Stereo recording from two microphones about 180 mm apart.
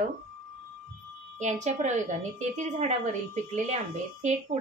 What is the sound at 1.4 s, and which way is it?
A woman's voice, 40° right (ahead or behind).